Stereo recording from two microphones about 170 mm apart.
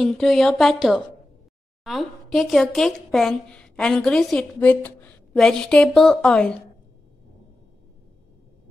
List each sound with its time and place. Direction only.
0.0 s a woman's voice: centre (ahead or behind)